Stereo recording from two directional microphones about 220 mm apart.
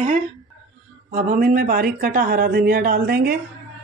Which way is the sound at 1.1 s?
35° right (ahead or behind).